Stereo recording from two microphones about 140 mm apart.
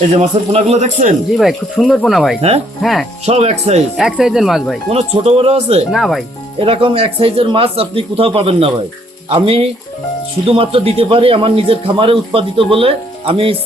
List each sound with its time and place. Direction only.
0.1 s speech: 50° right (ahead or behind)
1.4 s speech: centre (ahead or behind)
3.2 s speech: 50° right (ahead or behind)
3.9 s speech: 5° right (ahead or behind)
4.9 s speech: 50° right (ahead or behind)
5.9 s speech: centre (ahead or behind)
6.6 s a man's voice: 40° right (ahead or behind)